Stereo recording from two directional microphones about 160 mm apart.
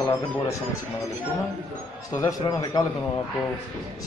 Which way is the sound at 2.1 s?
20° left (ahead or behind).